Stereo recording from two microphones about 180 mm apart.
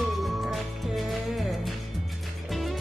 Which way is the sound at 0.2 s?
Centre (ahead or behind).